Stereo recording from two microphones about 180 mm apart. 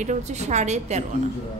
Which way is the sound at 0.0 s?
40° right (ahead or behind).